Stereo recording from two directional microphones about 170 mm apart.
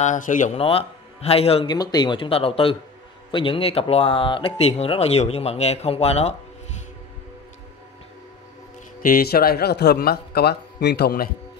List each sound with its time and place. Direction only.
0.0 s speech: 50° left (ahead or behind)
0.6 s speech: 35° left (ahead or behind)
9.0 s speech: 60° left (ahead or behind)